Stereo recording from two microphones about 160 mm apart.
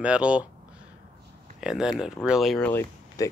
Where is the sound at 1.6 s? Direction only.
5° right (ahead or behind).